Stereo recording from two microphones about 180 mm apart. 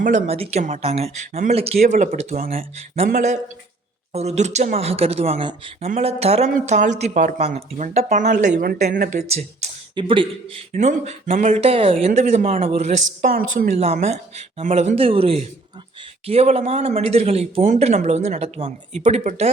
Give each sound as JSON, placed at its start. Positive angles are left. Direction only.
{"t": 0.0, "sound": "a woman's voice", "side_deg": -40}
{"t": 4.1, "sound": "a woman's voice", "side_deg": -35}
{"t": 9.9, "sound": "a woman's voice", "side_deg": -30}